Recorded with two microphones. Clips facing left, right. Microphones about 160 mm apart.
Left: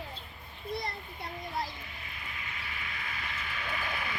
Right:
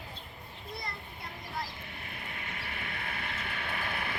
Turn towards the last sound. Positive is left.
turn(degrees=-55)  # may be behind; listen again after turning